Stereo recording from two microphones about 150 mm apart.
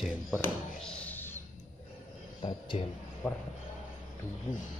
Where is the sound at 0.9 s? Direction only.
10° left (ahead or behind).